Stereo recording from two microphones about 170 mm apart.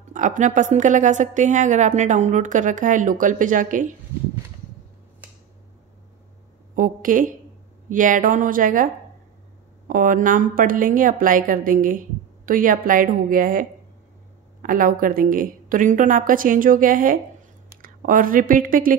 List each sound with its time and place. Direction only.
0.1 s a woman's voice: 45° right (ahead or behind)
6.7 s a woman's voice: 55° right (ahead or behind)